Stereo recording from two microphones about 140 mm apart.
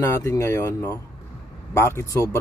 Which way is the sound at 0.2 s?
20° left (ahead or behind).